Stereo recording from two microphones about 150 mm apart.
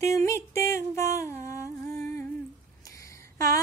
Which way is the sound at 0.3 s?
20° left (ahead or behind).